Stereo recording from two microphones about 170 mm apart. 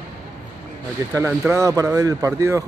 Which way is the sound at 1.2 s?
15° right (ahead or behind).